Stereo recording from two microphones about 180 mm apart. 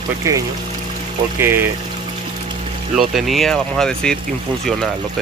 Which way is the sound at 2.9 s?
Centre (ahead or behind).